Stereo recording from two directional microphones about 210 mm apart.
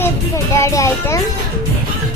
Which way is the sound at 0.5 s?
15° left (ahead or behind).